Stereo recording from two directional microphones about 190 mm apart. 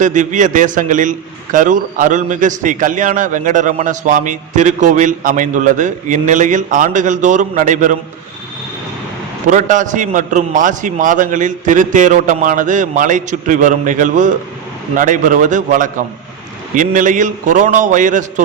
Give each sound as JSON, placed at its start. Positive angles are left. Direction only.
{"t": 0.0, "sound": "a man's voice", "side_deg": -40}
{"t": 9.5, "sound": "a man's voice", "side_deg": -45}